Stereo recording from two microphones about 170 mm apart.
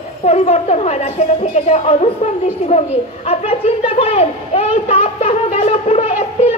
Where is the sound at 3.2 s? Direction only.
35° left (ahead or behind).